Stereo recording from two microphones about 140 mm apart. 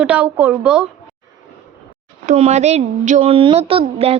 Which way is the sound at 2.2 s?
55° right (ahead or behind).